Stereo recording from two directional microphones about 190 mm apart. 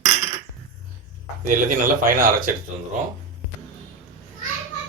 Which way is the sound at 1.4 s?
45° right (ahead or behind).